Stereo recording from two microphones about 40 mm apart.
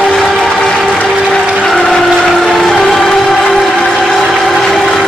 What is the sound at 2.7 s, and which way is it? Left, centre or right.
Music, centre.